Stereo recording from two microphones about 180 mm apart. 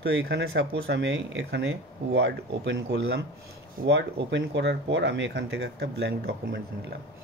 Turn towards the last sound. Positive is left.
turn(degrees=-65)  # may be behind; listen again after turning